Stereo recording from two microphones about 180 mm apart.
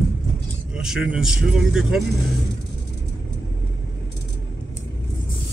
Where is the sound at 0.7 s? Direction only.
5° right (ahead or behind).